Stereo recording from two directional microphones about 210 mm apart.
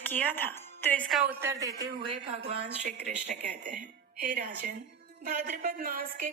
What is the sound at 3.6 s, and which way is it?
A woman's voice, 40° right (ahead or behind).